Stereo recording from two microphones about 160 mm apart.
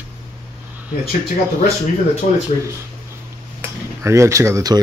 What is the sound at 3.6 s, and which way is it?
Speech, 15° right (ahead or behind).